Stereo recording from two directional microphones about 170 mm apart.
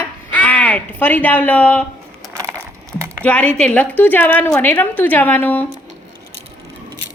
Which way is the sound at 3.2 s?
10° left (ahead or behind).